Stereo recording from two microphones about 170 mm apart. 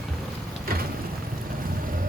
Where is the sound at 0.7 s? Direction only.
60° right (ahead or behind).